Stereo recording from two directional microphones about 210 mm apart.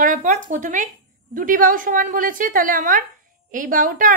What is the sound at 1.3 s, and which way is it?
A woman's voice, 40° right (ahead or behind).